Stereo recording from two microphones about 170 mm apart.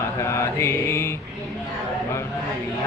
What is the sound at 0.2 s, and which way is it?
Speech, 15° left (ahead or behind).